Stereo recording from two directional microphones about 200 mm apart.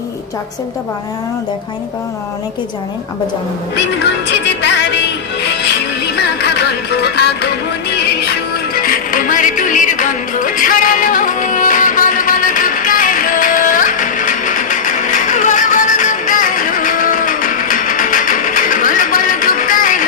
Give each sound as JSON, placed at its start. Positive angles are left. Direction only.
{"t": 4.3, "sound": "music", "side_deg": 60}
{"t": 6.1, "sound": "music", "side_deg": 55}